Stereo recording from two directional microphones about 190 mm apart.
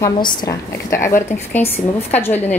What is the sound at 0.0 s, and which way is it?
A woman's voice, 20° left (ahead or behind).